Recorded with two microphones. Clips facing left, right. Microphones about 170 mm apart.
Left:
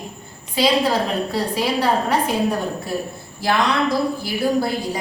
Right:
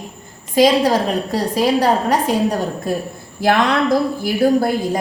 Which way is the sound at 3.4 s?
55° right (ahead or behind).